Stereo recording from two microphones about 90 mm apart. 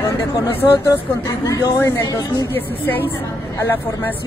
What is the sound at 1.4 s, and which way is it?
Speech, 45° left (ahead or behind).